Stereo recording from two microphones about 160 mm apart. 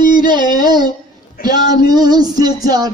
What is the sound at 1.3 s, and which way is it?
Speech, 65° left (ahead or behind).